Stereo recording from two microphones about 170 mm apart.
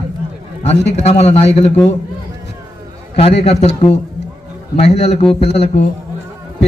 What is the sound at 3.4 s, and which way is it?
Speech, 40° left (ahead or behind).